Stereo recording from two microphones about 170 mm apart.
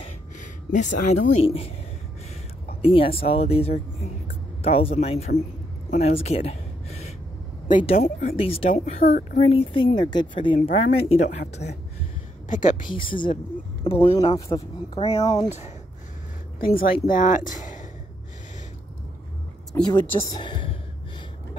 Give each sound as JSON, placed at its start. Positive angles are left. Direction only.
{"t": 0.4, "sound": "speech", "side_deg": 50}
{"t": 2.8, "sound": "speech", "side_deg": 35}
{"t": 5.9, "sound": "a sound", "side_deg": 40}
{"t": 7.8, "sound": "speech", "side_deg": 40}
{"t": 9.0, "sound": "speech", "side_deg": 60}
{"t": 9.4, "sound": "speech", "side_deg": 35}
{"t": 12.4, "sound": "speech", "side_deg": 50}
{"t": 12.9, "sound": "speech", "side_deg": 30}
{"t": 15.0, "sound": "speech", "side_deg": 35}
{"t": 16.5, "sound": "speech", "side_deg": 60}
{"t": 19.9, "sound": "speech", "side_deg": 25}